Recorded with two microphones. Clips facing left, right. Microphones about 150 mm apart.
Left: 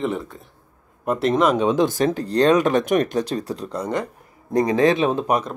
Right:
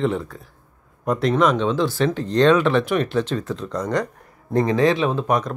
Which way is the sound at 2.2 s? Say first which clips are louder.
Right 1 dB; 35° left (ahead or behind).